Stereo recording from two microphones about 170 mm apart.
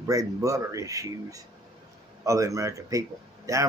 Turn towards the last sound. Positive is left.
turn(degrees=-20)  # may be behind; listen again after turning